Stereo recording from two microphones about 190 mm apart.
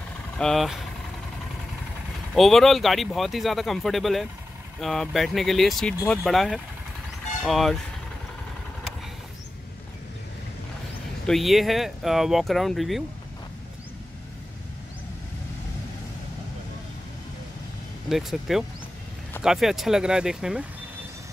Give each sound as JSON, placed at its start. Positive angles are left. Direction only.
{"t": 0.4, "sound": "speech", "side_deg": 0}
{"t": 2.3, "sound": "speech", "side_deg": 0}
{"t": 11.2, "sound": "speech", "side_deg": 0}
{"t": 18.0, "sound": "speech", "side_deg": 0}